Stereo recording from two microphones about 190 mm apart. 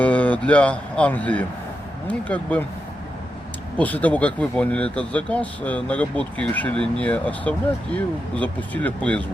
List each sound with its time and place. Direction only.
0.0 s speech: 10° left (ahead or behind)
3.8 s speech: 10° left (ahead or behind)